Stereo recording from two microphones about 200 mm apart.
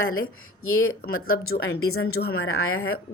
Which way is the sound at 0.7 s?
90° left.